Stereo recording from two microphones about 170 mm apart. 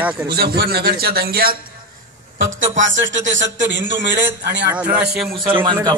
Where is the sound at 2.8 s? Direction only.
90° right.